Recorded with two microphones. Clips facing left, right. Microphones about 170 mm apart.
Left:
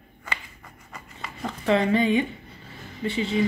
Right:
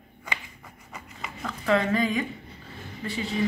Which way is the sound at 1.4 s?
25° left (ahead or behind).